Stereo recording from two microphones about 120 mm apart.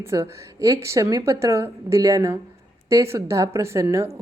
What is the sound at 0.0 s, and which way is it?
A woman's voice, 25° right (ahead or behind).